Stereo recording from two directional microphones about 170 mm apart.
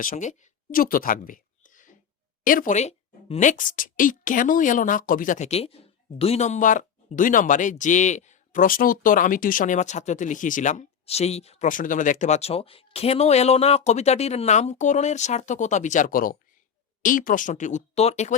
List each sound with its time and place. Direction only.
0.0 s a woman's voice: 50° left (ahead or behind)